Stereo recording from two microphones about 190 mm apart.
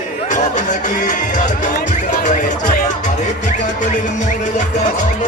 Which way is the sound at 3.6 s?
40° left (ahead or behind).